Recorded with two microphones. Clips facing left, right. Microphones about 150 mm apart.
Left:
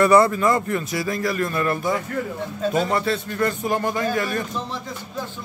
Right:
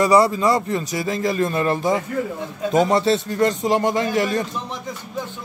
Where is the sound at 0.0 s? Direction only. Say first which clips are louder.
Even; 15° right (ahead or behind).